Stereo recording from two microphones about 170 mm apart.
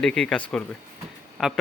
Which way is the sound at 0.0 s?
5° left (ahead or behind).